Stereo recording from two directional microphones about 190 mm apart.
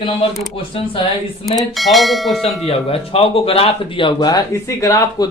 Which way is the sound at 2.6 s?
30° left (ahead or behind).